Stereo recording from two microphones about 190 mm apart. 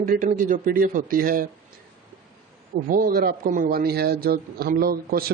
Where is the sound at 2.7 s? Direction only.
45° right (ahead or behind).